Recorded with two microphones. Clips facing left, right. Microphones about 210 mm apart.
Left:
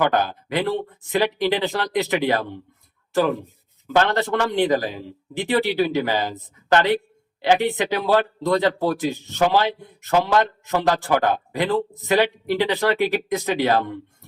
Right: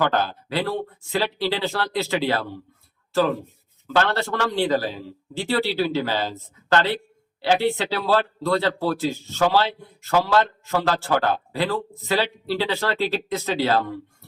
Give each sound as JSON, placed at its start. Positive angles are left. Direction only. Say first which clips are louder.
{"t": 0.0, "sound": "speech", "louder": "left 2 dB", "side_deg": 15}